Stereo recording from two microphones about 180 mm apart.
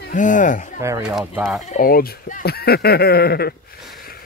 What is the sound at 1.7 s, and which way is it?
Speech, 50° left (ahead or behind).